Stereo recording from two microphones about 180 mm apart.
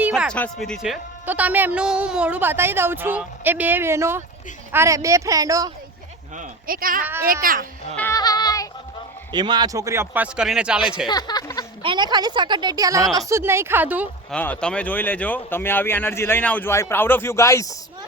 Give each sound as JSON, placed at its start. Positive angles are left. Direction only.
{"t": 0.0, "sound": "speech", "side_deg": 0}
{"t": 6.3, "sound": "speech", "side_deg": -50}
{"t": 7.0, "sound": "speech", "side_deg": -10}
{"t": 7.4, "sound": "speech", "side_deg": -50}
{"t": 7.9, "sound": "music", "side_deg": 15}
{"t": 9.3, "sound": "speech", "side_deg": -25}
{"t": 11.1, "sound": "speech", "side_deg": 20}
{"t": 11.8, "sound": "a woman's voice", "side_deg": -25}
{"t": 14.3, "sound": "speech", "side_deg": 5}